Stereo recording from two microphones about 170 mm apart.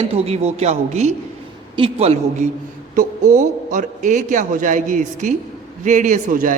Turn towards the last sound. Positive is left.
turn(degrees=-45)  # may be behind; listen again after turning